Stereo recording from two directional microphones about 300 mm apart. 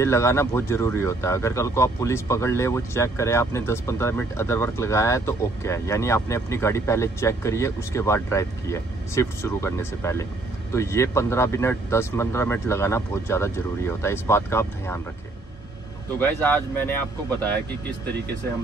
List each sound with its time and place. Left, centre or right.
0.0 s speech: centre
16.2 s speech: centre